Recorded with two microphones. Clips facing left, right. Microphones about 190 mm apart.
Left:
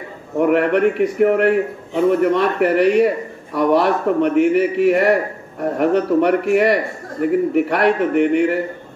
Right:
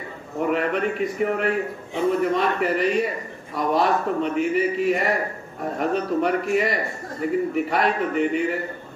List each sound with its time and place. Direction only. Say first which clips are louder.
0.4 s a man's voice: left 8 dB; 65° left (ahead or behind)